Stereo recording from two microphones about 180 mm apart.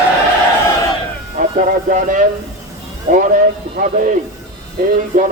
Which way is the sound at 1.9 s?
50° right (ahead or behind).